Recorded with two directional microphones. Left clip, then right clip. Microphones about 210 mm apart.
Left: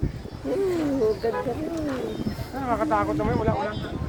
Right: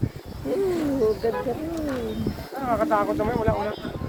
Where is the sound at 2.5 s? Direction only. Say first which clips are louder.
Right 1 dB; 40° right (ahead or behind).